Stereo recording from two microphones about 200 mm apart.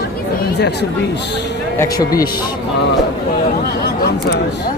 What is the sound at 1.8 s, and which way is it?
Speech, 15° left (ahead or behind).